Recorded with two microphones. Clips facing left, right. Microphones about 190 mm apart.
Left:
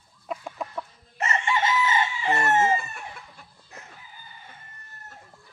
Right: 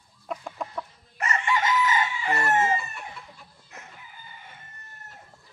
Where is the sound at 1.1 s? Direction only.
25° left (ahead or behind).